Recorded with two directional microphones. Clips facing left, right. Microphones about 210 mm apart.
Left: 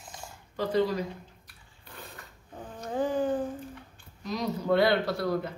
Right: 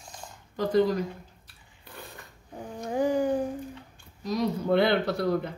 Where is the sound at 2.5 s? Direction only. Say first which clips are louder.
Right 3 dB; 15° right (ahead or behind).